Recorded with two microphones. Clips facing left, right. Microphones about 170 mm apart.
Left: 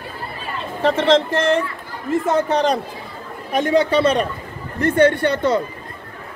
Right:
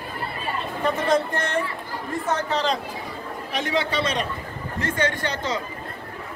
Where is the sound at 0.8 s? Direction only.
90° left.